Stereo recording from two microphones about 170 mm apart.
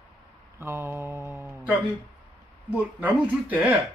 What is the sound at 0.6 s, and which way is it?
Speech, 15° right (ahead or behind).